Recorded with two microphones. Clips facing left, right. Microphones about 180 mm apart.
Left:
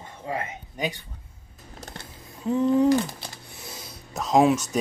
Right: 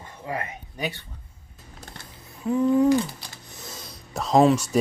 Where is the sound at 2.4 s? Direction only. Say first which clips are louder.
Right 1 dB; 25° left (ahead or behind).